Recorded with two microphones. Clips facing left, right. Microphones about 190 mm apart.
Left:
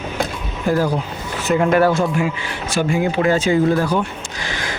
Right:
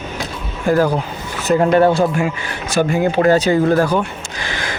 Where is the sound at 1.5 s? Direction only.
35° right (ahead or behind).